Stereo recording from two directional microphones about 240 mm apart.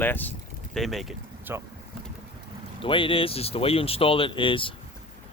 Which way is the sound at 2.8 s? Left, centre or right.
Left.